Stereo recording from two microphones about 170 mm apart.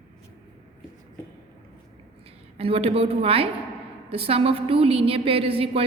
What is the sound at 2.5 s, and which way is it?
A woman's voice, 35° right (ahead or behind).